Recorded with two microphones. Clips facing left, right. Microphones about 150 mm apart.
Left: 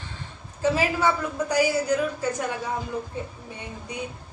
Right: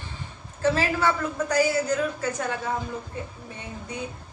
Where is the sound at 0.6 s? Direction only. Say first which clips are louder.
Left 1 dB; 15° left (ahead or behind).